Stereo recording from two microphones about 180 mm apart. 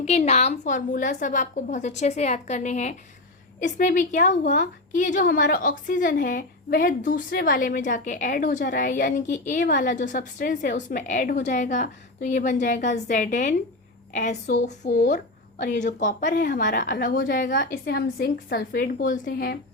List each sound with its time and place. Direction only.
0.0 s a woman's voice: 40° left (ahead or behind); by 19.5 s 55° left (ahead or behind)